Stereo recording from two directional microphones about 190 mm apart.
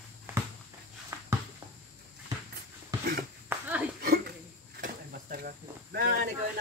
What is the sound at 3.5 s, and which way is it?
Clapping, 10° right (ahead or behind).